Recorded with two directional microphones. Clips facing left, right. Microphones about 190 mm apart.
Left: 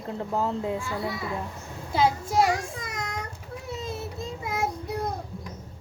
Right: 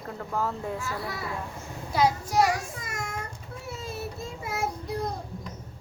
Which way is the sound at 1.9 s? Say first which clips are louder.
Left 1 dB; 25° left (ahead or behind).